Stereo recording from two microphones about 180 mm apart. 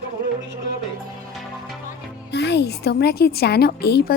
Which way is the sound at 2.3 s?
70° left (ahead or behind).